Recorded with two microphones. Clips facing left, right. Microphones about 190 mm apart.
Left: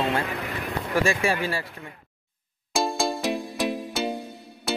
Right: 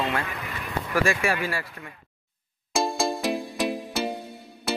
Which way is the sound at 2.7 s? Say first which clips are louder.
Even; centre (ahead or behind).